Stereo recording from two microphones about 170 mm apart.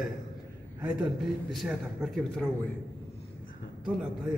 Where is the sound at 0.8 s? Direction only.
5° right (ahead or behind).